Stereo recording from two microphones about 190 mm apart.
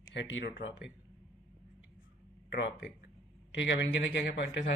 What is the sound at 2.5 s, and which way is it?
Speech, 65° left (ahead or behind).